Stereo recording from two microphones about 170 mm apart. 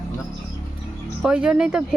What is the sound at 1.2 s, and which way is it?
Speech, 5° right (ahead or behind).